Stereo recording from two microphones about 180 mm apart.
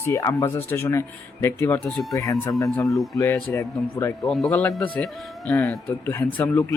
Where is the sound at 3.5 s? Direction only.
15° left (ahead or behind).